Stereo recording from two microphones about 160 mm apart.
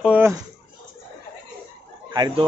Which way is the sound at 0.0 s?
10° right (ahead or behind).